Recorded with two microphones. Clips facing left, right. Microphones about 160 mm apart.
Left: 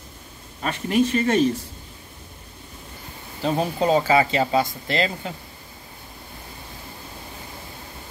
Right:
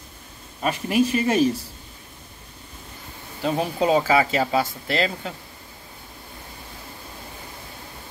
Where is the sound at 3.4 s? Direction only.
5° right (ahead or behind).